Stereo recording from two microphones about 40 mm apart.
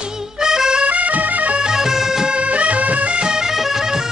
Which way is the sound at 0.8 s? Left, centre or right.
Right.